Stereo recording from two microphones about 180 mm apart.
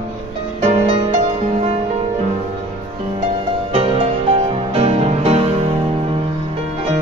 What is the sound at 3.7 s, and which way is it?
Music, 35° right (ahead or behind).